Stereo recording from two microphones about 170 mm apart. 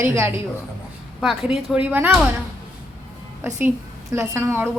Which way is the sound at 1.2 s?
Centre (ahead or behind).